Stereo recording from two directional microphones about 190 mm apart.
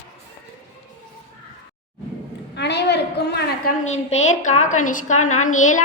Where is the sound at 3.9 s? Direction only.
35° left (ahead or behind).